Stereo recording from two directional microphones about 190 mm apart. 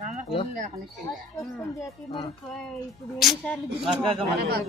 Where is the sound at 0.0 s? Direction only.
35° right (ahead or behind).